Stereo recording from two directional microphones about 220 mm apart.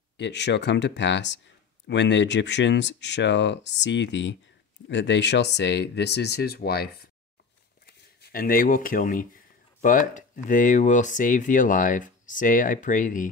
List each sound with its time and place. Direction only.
0.2 s speech: 50° left (ahead or behind); by 13.3 s 35° left (ahead or behind)